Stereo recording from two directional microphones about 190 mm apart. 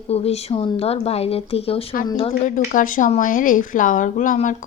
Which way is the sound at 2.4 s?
45° left (ahead or behind).